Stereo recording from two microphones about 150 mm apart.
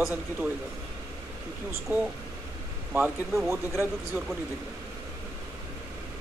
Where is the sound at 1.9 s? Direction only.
15° right (ahead or behind).